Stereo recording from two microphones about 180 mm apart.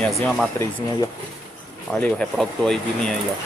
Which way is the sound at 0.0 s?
Centre (ahead or behind).